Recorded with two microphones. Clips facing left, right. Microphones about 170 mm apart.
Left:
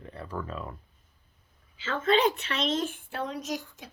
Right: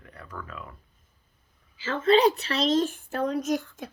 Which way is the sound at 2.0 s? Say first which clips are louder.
Right 4 dB; 35° right (ahead or behind).